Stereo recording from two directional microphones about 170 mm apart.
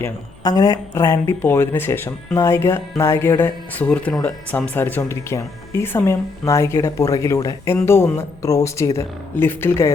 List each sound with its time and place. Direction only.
0.0 s speech: 20° left (ahead or behind)